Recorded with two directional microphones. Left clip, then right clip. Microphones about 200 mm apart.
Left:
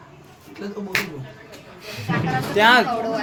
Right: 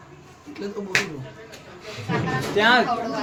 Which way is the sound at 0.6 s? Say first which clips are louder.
Right 1 dB; 40° right (ahead or behind).